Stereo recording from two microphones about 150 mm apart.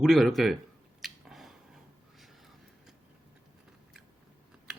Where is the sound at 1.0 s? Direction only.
Centre (ahead or behind).